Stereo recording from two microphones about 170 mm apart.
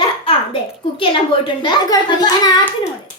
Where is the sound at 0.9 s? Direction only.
30° left (ahead or behind).